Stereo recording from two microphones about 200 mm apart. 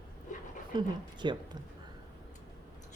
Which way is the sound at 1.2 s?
20° right (ahead or behind).